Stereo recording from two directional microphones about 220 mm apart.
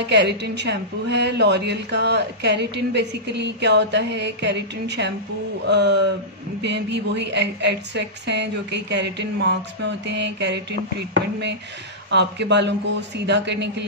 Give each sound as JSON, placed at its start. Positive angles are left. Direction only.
{"t": 0.0, "sound": "a woman's voice", "side_deg": -50}
{"t": 12.1, "sound": "a woman's voice", "side_deg": -50}